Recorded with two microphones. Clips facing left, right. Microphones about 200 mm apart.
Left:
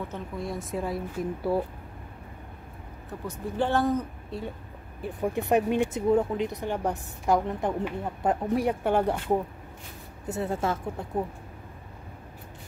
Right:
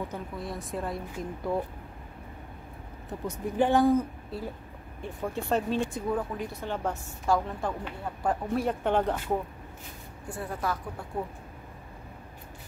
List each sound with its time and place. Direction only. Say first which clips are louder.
0.4 s speech: left 4 dB; centre (ahead or behind)
3.3 s speech: right 2 dB; 15° right (ahead or behind)
5.2 s speech: left 5 dB; 15° left (ahead or behind)
10.2 s a woman's voice: left 5 dB; 25° left (ahead or behind)